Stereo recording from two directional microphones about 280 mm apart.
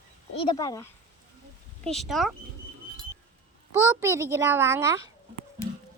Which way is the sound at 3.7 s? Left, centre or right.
Centre.